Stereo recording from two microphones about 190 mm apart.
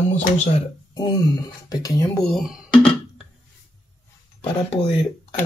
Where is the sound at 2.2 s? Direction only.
Centre (ahead or behind).